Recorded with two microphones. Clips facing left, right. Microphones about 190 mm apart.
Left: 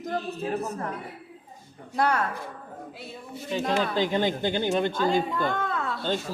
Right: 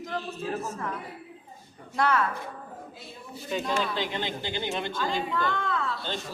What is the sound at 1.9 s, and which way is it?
Speech, 40° left (ahead or behind).